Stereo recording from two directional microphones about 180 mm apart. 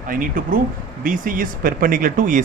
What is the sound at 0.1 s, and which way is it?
Speech, 50° right (ahead or behind).